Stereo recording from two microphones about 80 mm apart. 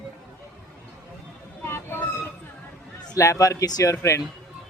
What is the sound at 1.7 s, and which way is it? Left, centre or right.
Train, left.